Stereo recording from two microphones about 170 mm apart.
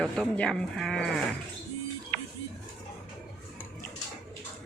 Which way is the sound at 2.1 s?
60° right (ahead or behind).